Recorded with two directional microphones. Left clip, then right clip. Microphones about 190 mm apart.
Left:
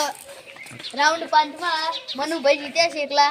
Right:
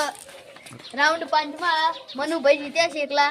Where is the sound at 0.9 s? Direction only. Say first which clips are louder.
Left 2 dB; centre (ahead or behind).